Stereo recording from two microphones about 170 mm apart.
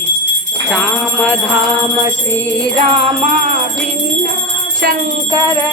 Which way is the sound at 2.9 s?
35° right (ahead or behind).